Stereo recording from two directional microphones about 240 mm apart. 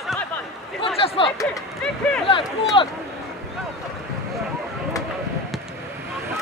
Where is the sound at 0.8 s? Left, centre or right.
Left.